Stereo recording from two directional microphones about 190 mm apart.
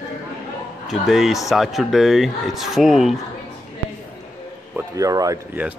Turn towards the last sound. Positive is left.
turn(degrees=-15)  # may be behind; listen again after turning